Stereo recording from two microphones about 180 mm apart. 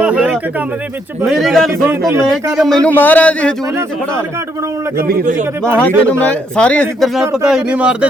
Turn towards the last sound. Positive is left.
turn(degrees=-5)  # may be behind; listen again after turning